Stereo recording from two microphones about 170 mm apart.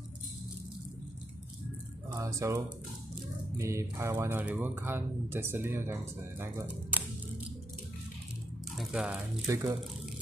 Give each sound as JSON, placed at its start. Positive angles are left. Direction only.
{"t": 2.0, "sound": "speech", "side_deg": -20}
{"t": 8.7, "sound": "a sound", "side_deg": -5}
{"t": 9.5, "sound": "speech", "side_deg": -15}